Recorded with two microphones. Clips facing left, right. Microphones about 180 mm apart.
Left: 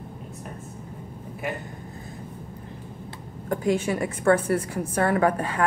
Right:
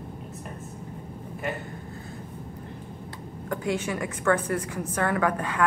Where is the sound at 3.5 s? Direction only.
35° left (ahead or behind).